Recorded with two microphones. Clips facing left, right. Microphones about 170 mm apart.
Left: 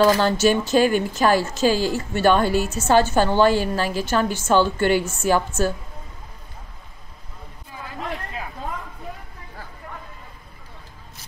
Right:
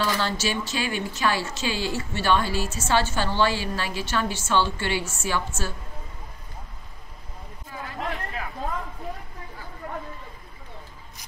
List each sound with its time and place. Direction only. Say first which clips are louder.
0.0 s speech: left 9 dB; 45° left (ahead or behind)